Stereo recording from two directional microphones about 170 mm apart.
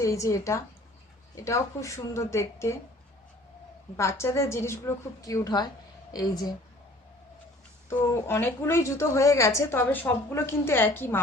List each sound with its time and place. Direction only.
0.0 s a woman's voice: 20° left (ahead or behind)
3.9 s a woman's voice: 15° left (ahead or behind)
7.9 s a woman's voice: 15° left (ahead or behind)